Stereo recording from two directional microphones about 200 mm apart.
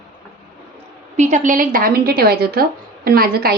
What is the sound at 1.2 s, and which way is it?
A woman's voice, 35° right (ahead or behind).